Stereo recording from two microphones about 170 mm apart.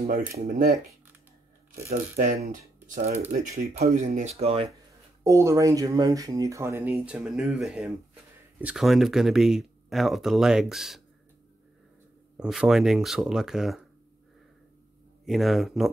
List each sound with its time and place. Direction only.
0.5 s speech: 50° right (ahead or behind)
1.9 s speech: 50° right (ahead or behind)
5.2 s speech: 20° right (ahead or behind); by 11.0 s centre (ahead or behind)
12.4 s speech: 5° right (ahead or behind)
15.2 s speech: centre (ahead or behind)